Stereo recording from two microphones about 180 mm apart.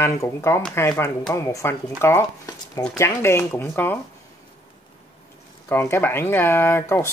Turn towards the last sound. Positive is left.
turn(degrees=15)  # may be behind; listen again after turning